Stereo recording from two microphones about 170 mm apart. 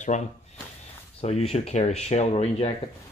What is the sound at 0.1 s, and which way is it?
Speech, 45° left (ahead or behind).